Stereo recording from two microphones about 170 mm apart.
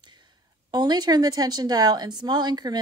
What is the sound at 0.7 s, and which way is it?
A woman's voice, 25° right (ahead or behind).